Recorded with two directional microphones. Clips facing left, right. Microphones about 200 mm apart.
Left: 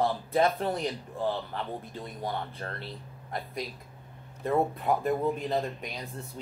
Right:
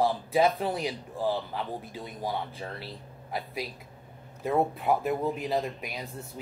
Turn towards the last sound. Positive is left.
turn(degrees=-5)  # may be behind; listen again after turning